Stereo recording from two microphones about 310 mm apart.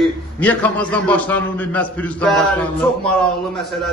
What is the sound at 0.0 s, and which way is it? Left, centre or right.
Speech, centre.